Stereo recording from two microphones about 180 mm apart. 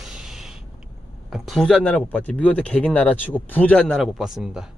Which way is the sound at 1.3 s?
Centre (ahead or behind).